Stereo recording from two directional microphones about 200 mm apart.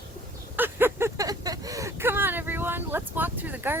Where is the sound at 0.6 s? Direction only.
10° right (ahead or behind).